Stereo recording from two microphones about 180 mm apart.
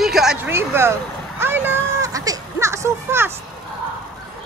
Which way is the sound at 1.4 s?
10° right (ahead or behind).